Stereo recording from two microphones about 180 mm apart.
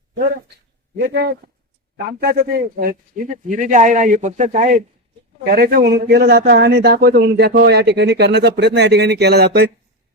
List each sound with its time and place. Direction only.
0.9 s speech: 65° right (ahead or behind)
2.0 s speech: 55° right (ahead or behind)
5.5 s a man's voice: 60° right (ahead or behind)